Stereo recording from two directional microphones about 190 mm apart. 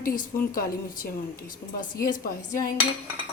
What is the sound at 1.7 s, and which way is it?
Speech, 45° left (ahead or behind).